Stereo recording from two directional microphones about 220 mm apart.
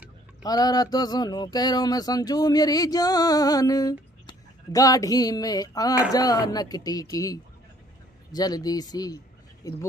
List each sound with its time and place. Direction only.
0.4 s speech: 15° left (ahead or behind)